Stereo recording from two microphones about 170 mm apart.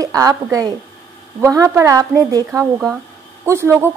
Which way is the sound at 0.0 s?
20° right (ahead or behind).